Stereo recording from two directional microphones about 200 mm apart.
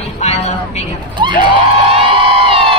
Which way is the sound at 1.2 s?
25° right (ahead or behind).